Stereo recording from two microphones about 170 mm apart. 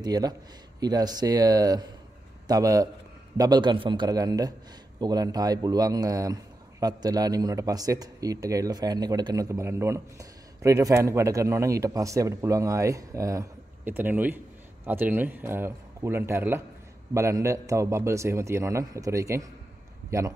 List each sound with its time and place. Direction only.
0.0 s a man's voice: 25° right (ahead or behind)